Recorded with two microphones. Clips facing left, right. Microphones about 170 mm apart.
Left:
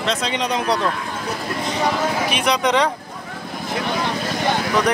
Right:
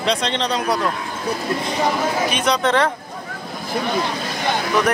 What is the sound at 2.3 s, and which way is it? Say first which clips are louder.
Speech: even; centre (ahead or behind).